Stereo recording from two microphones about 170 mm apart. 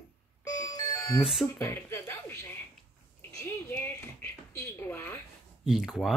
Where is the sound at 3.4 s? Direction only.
15° left (ahead or behind).